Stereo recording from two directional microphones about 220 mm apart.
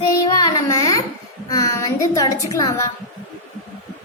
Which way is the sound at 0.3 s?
15° left (ahead or behind).